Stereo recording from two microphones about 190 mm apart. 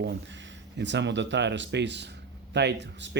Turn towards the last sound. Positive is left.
turn(degrees=-65)  # may be behind; listen again after turning